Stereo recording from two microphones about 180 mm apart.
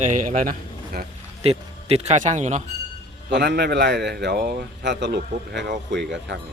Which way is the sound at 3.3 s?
70° right (ahead or behind).